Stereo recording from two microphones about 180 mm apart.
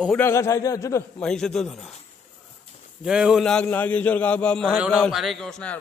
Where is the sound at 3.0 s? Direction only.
5° right (ahead or behind).